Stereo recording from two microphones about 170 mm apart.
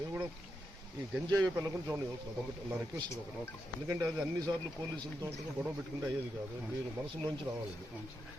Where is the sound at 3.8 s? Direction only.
20° right (ahead or behind).